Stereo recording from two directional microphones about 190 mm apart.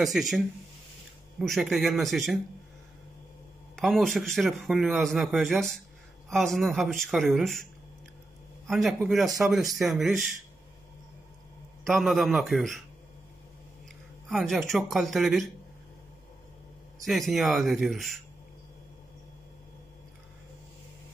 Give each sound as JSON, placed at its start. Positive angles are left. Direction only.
{"t": 0.0, "sound": "a man's voice", "side_deg": 0}
{"t": 1.4, "sound": "a man's voice", "side_deg": 0}
{"t": 3.7, "sound": "a man's voice", "side_deg": 0}
{"t": 8.6, "sound": "a man's voice", "side_deg": 0}
{"t": 11.8, "sound": "a man's voice", "side_deg": 0}
{"t": 14.3, "sound": "a man's voice", "side_deg": 0}
{"t": 17.0, "sound": "a man's voice", "side_deg": 0}